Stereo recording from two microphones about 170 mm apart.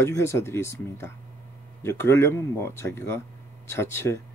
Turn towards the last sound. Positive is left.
turn(degrees=15)  # may be behind; listen again after turning